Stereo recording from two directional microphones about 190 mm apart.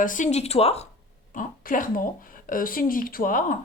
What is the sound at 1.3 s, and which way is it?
Speech, 45° left (ahead or behind).